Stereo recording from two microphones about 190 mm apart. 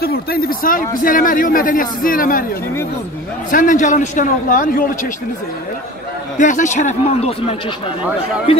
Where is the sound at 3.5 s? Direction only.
45° left (ahead or behind).